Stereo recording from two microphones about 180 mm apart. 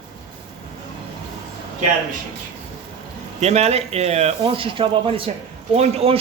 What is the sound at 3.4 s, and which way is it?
A man's voice, 35° right (ahead or behind).